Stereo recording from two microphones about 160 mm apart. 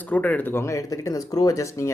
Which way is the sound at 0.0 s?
10° left (ahead or behind).